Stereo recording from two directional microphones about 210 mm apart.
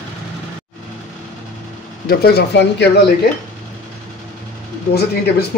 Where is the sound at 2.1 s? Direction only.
50° left (ahead or behind).